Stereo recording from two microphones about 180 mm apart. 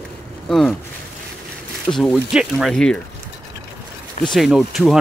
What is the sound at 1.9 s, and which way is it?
Speech, centre (ahead or behind).